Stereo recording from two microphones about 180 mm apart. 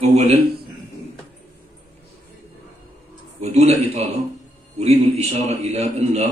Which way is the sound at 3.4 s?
35° right (ahead or behind).